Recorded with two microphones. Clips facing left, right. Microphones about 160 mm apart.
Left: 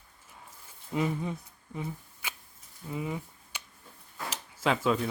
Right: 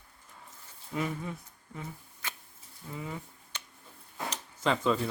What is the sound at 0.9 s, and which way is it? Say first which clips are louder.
Speech: left 4 dB; 20° left (ahead or behind).